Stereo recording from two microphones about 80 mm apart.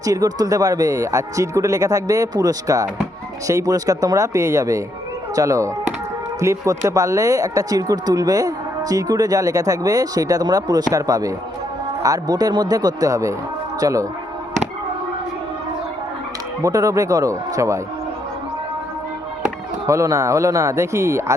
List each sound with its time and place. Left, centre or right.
0.0 s speech: right
16.6 s speech: right
19.9 s speech: right